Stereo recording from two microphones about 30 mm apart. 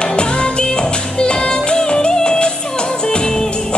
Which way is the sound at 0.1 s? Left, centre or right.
Left.